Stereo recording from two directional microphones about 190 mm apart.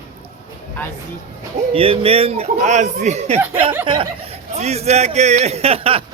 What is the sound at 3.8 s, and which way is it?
A man's voice, 25° right (ahead or behind).